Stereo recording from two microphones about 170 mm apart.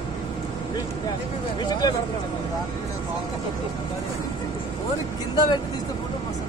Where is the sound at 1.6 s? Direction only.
25° left (ahead or behind).